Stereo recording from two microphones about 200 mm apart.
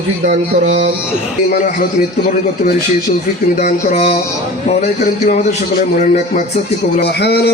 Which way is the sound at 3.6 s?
40° left (ahead or behind).